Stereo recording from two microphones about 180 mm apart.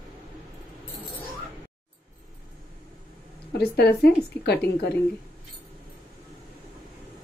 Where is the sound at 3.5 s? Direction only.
60° left (ahead or behind).